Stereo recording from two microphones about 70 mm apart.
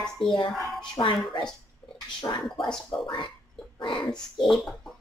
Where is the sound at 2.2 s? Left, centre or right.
Left.